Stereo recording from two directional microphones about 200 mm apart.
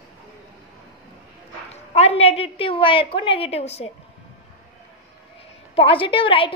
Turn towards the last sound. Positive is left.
turn(degrees=25)  # may be behind; listen again after turning